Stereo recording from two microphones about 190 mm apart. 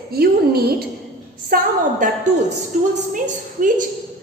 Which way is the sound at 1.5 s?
50° right (ahead or behind).